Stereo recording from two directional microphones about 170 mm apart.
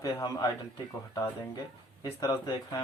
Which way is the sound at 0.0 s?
20° left (ahead or behind).